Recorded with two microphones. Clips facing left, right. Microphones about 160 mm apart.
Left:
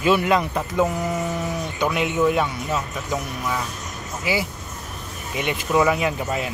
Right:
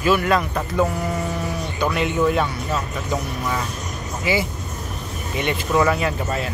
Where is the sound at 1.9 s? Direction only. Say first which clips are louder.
Even; 10° left (ahead or behind).